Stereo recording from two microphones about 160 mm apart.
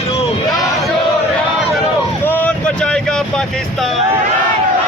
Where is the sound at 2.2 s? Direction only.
10° left (ahead or behind).